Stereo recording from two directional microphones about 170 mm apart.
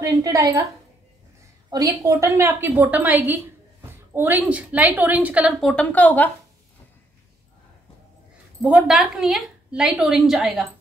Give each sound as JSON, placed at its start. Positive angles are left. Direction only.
{"t": 0.0, "sound": "a woman's voice", "side_deg": -20}
{"t": 1.7, "sound": "a woman's voice", "side_deg": -20}
{"t": 8.6, "sound": "a woman's voice", "side_deg": -5}